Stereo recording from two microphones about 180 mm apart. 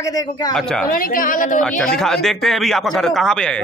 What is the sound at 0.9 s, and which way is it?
Speech, 50° left (ahead or behind).